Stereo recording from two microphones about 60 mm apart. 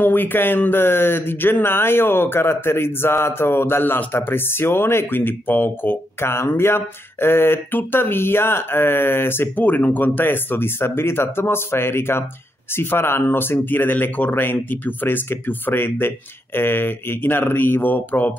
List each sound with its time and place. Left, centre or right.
0.0 s speech: left